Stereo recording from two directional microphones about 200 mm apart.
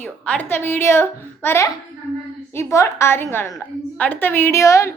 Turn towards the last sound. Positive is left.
turn(degrees=15)  # may be behind; listen again after turning